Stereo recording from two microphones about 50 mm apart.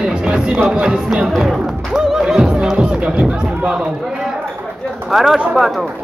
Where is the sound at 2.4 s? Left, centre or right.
Centre.